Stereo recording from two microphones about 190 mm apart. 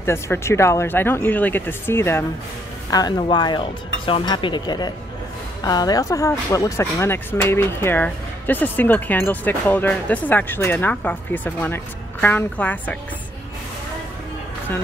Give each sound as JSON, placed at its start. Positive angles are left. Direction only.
{"t": 0.0, "sound": "speech", "side_deg": 15}